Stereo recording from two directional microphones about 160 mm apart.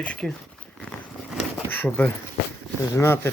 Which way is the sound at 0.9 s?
Centre (ahead or behind).